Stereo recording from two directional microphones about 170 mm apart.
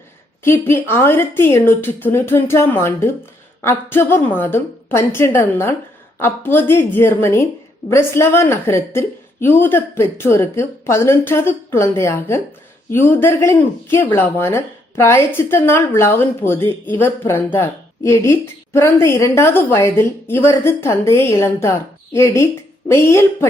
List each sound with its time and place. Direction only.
0.4 s speech: 15° left (ahead or behind)